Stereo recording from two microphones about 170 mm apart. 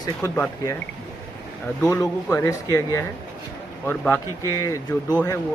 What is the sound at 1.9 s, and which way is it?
Speech, 20° left (ahead or behind).